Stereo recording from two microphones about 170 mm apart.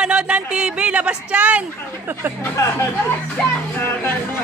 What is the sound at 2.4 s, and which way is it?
Speech, 15° left (ahead or behind).